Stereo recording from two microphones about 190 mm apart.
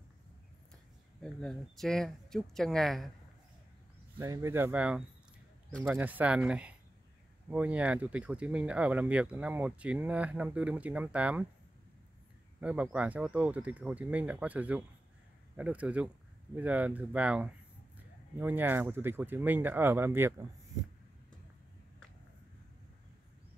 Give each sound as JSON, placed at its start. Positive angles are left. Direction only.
{"t": 1.2, "sound": "speech", "side_deg": 0}
{"t": 4.2, "sound": "speech", "side_deg": -15}
{"t": 12.5, "sound": "speech", "side_deg": -5}